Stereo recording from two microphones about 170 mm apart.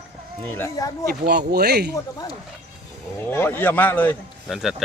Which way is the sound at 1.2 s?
70° right (ahead or behind).